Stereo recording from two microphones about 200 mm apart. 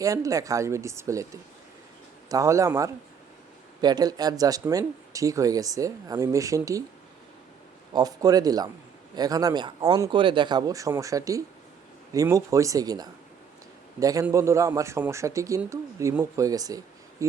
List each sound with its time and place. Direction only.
0.0 s a man's voice: 15° right (ahead or behind)
7.9 s a man's voice: 20° right (ahead or behind)